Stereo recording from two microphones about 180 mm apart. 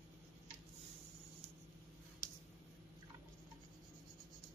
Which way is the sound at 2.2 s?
15° right (ahead or behind).